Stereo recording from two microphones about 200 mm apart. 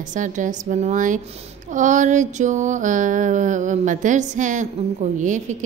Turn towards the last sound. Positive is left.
turn(degrees=-40)  # may be behind; listen again after turning